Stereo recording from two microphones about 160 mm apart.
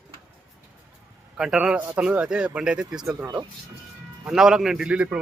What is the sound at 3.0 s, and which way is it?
Speech, 20° right (ahead or behind).